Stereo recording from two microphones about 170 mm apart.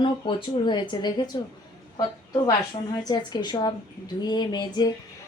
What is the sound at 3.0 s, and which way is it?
Speech, 25° left (ahead or behind).